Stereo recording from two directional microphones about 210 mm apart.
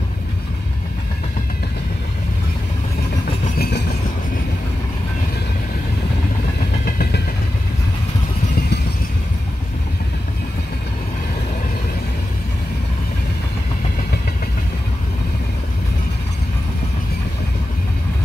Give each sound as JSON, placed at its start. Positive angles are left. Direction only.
{"t": 3.5, "sound": "train", "side_deg": 50}